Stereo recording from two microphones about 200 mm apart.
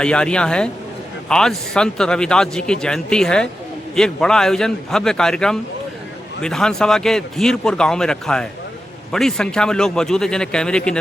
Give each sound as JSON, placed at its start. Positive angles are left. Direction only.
{"t": 0.0, "sound": "speech", "side_deg": 5}